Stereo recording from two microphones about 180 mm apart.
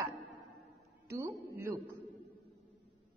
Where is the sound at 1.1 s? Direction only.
15° right (ahead or behind).